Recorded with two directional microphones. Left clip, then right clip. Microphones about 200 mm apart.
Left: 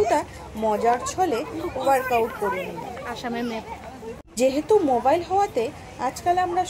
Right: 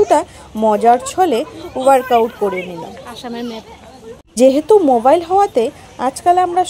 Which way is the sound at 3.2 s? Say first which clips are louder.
Right 4 dB; 35° right (ahead or behind).